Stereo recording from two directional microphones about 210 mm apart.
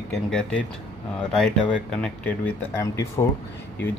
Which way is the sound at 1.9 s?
5° left (ahead or behind).